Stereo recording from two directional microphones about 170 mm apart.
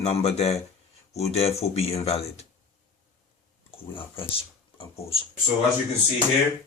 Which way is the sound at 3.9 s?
30° left (ahead or behind).